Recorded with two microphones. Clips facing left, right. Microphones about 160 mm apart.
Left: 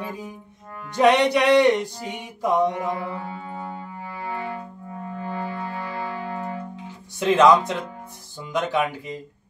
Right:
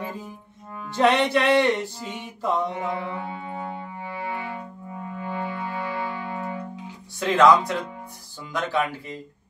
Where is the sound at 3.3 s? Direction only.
25° right (ahead or behind).